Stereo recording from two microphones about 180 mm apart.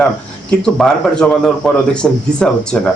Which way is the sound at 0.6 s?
5° left (ahead or behind).